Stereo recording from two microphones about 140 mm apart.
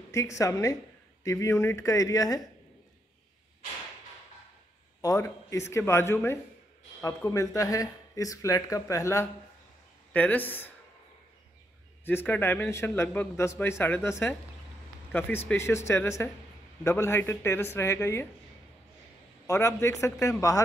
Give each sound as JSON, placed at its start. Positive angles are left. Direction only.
{"t": 0.1, "sound": "speech", "side_deg": 20}
{"t": 5.0, "sound": "a man's voice", "side_deg": 20}
{"t": 12.0, "sound": "a man's voice", "side_deg": 15}
{"t": 19.4, "sound": "speech", "side_deg": 20}